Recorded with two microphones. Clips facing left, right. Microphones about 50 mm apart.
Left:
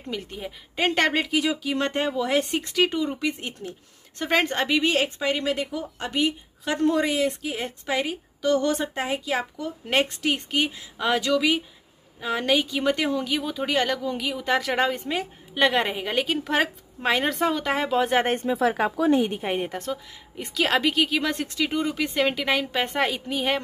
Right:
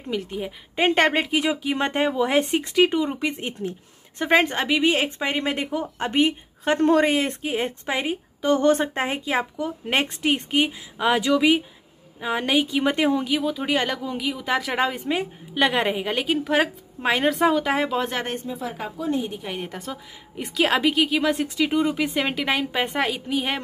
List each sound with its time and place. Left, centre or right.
0.0 s a woman's voice: centre
5.2 s a woman's voice: right
13.3 s a woman's voice: centre
18.5 s speech: left
19.7 s a woman's voice: centre